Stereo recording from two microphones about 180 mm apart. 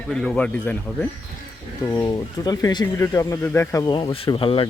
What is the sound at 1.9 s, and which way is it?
Speech, 20° left (ahead or behind).